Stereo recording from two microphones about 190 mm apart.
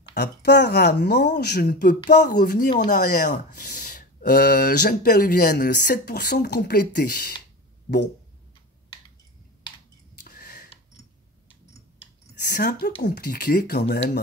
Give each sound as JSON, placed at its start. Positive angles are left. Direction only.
{"t": 0.1, "sound": "speech", "side_deg": 60}
{"t": 2.0, "sound": "speech", "side_deg": 40}
{"t": 10.2, "sound": "a sound", "side_deg": 55}
{"t": 12.4, "sound": "speech", "side_deg": 60}